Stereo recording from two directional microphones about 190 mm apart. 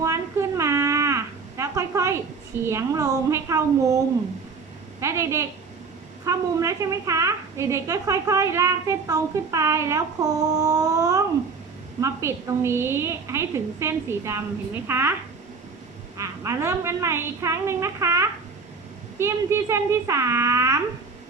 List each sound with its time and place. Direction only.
0.0 s a sound: 15° right (ahead or behind)
2.6 s a woman's voice: 15° right (ahead or behind)
16.1 s a woman's voice: 15° right (ahead or behind)